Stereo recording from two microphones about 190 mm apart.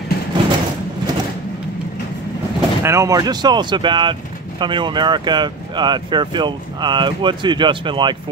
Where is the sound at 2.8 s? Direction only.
15° right (ahead or behind).